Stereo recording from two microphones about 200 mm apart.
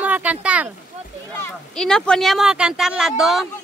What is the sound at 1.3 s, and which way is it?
A woman's voice, 5° left (ahead or behind).